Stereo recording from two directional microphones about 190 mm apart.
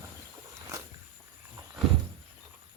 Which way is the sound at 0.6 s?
15° right (ahead or behind).